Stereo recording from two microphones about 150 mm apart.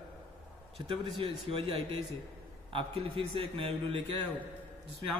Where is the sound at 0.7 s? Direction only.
40° right (ahead or behind).